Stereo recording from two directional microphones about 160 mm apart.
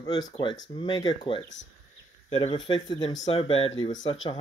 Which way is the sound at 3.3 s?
35° left (ahead or behind).